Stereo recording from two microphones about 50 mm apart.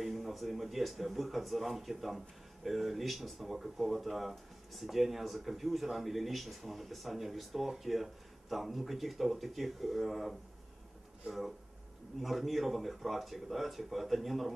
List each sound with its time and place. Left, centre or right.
0.0 s speech: centre
12.2 s speech: centre